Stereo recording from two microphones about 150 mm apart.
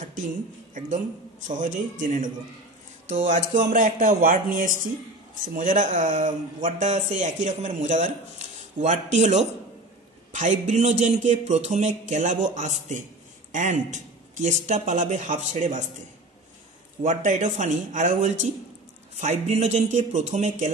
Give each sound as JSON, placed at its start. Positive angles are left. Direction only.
{"t": 0.7, "sound": "speech", "side_deg": -55}
{"t": 17.0, "sound": "speech", "side_deg": -55}